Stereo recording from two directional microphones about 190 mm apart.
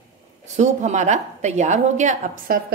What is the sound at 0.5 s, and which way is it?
A woman's voice, 35° right (ahead or behind).